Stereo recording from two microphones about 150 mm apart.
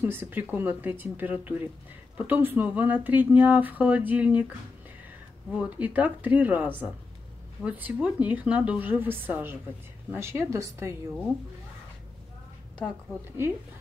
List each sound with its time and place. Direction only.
0.0 s speech: 15° right (ahead or behind)
5.6 s a woman's voice: 10° right (ahead or behind)